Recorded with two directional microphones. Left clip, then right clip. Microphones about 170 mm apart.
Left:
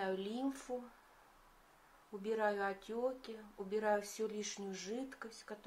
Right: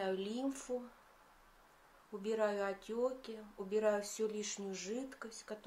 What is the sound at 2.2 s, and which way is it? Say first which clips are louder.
Speech: right 1 dB; centre (ahead or behind).